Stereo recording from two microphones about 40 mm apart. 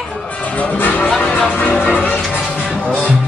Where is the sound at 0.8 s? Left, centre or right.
Left.